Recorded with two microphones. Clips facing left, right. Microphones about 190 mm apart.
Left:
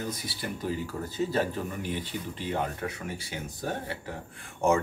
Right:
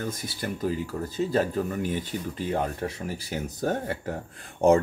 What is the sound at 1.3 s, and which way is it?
Speech, 40° right (ahead or behind).